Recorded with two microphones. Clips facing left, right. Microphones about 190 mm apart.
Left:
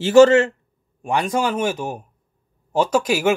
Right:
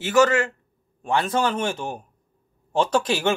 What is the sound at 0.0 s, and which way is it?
Speech, 30° left (ahead or behind).